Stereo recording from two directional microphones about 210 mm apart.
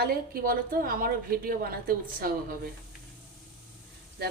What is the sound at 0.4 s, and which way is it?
A woman's voice, 45° right (ahead or behind).